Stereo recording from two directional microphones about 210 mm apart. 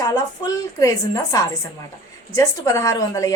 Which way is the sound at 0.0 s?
15° left (ahead or behind).